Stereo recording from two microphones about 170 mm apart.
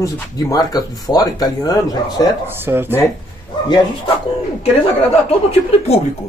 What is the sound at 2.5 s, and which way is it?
Speech, 10° right (ahead or behind).